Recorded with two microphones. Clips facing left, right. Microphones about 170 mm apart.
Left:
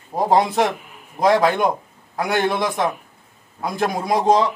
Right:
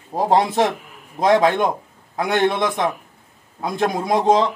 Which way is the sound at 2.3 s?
Centre (ahead or behind).